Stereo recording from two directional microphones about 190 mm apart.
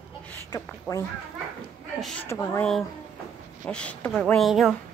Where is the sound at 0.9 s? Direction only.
Centre (ahead or behind).